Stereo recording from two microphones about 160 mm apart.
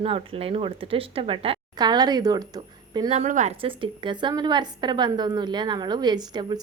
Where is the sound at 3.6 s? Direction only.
30° right (ahead or behind).